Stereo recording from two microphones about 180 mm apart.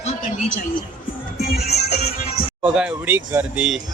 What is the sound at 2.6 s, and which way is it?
Speech, 5° right (ahead or behind).